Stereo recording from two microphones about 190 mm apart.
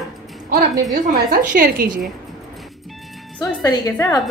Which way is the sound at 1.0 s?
45° right (ahead or behind).